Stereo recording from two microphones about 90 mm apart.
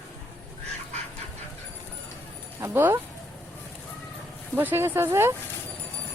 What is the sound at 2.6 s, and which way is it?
Speech, 25° right (ahead or behind).